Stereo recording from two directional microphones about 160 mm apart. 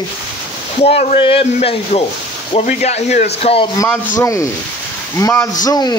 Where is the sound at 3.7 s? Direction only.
15° left (ahead or behind).